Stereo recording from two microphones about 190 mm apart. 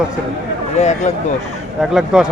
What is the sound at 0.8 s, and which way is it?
Speech, 35° left (ahead or behind).